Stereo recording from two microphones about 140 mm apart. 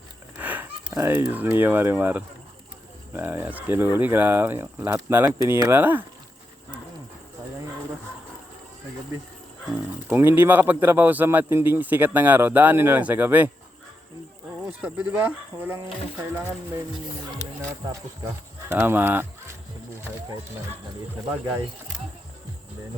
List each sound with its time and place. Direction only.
0.3 s a man's voice: 10° right (ahead or behind)
10.1 s a man's voice: 15° right (ahead or behind)
14.8 s a man's voice: 10° right (ahead or behind)
17.6 s speech: 25° right (ahead or behind)
18.7 s a man's voice: 15° right (ahead or behind)